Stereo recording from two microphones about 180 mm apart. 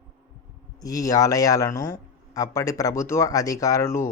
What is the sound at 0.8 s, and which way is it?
A man's voice, 20° left (ahead or behind).